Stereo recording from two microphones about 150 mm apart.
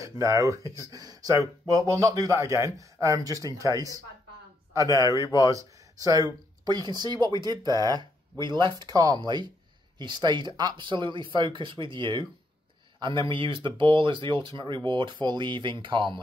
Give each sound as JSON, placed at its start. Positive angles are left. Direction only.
{"t": 0.0, "sound": "speech", "side_deg": -20}
{"t": 5.2, "sound": "speech", "side_deg": 25}
{"t": 5.5, "sound": "speech", "side_deg": -20}